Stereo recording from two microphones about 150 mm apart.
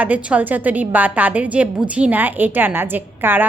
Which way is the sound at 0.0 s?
10° right (ahead or behind).